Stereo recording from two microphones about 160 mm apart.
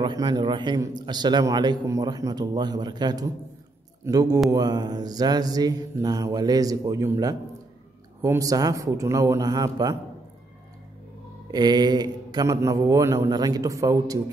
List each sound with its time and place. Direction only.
0.0 s a man's voice: 25° right (ahead or behind)
11.5 s a man's voice: 25° right (ahead or behind)